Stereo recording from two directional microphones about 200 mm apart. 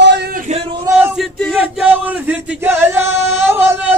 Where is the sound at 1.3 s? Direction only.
Centre (ahead or behind).